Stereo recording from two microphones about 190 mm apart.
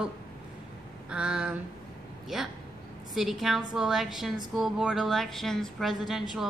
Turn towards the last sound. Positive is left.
turn(degrees=0)  # may be behind; listen again after turning